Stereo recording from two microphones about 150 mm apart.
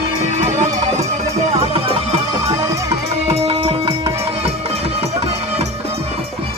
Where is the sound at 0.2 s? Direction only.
50° right (ahead or behind).